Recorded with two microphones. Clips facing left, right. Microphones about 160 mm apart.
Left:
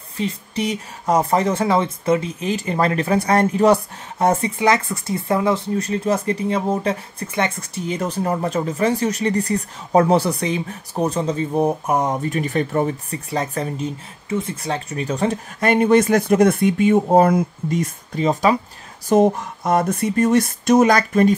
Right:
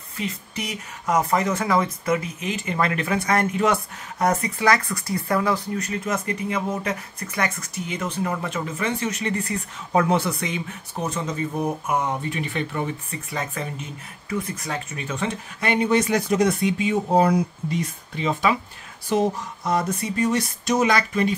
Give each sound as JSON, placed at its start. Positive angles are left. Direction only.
{"t": 0.2, "sound": "speech", "side_deg": 30}